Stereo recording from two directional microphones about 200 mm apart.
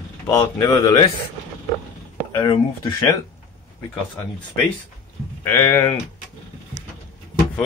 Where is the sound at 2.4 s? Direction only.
20° left (ahead or behind).